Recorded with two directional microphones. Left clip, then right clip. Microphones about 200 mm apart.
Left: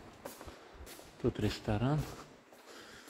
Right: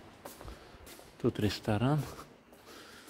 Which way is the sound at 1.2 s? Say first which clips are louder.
Right 3 dB; 35° right (ahead or behind).